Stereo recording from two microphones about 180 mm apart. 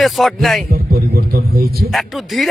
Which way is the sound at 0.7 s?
55° right (ahead or behind).